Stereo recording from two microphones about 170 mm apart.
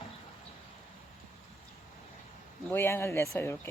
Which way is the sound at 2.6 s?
15° left (ahead or behind).